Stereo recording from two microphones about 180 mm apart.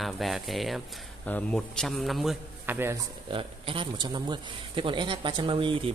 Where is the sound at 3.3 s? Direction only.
30° right (ahead or behind).